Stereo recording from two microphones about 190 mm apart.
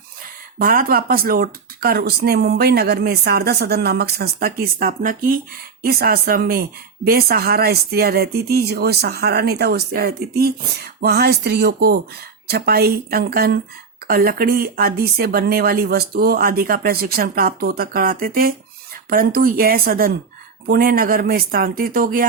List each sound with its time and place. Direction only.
0.6 s speech: 50° right (ahead or behind)